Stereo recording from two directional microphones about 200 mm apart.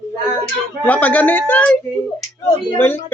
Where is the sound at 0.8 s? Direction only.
10° left (ahead or behind).